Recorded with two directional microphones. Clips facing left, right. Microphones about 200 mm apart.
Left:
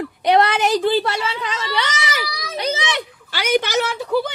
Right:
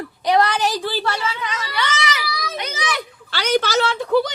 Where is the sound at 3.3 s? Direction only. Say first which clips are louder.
Even; 10° left (ahead or behind).